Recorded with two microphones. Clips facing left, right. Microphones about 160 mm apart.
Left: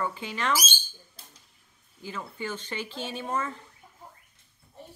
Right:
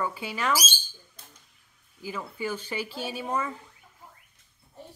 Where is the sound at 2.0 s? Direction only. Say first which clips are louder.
Right 3 dB; 10° right (ahead or behind).